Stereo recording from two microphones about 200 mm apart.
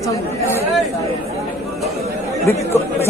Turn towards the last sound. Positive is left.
turn(degrees=10)  # may be behind; listen again after turning